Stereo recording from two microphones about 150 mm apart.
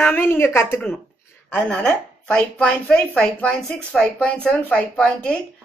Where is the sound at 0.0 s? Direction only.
15° left (ahead or behind).